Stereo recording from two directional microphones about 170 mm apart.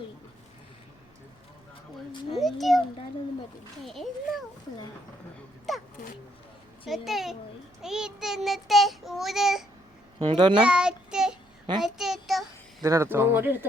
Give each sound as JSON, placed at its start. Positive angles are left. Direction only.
{"t": 2.3, "sound": "child singing", "side_deg": 0}
{"t": 3.8, "sound": "child singing", "side_deg": 0}
{"t": 5.7, "sound": "wail", "side_deg": 0}
{"t": 6.8, "sound": "child singing", "side_deg": 0}
{"t": 10.2, "sound": "a child's voice", "side_deg": -25}
{"t": 10.6, "sound": "child singing", "side_deg": -5}
{"t": 12.8, "sound": "speech", "side_deg": -15}